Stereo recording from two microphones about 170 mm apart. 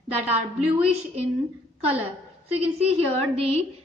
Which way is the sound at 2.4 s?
35° right (ahead or behind).